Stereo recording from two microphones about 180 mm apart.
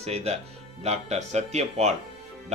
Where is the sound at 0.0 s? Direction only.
35° right (ahead or behind).